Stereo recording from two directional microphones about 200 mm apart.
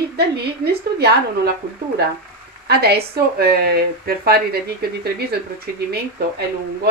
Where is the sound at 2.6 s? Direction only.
55° right (ahead or behind).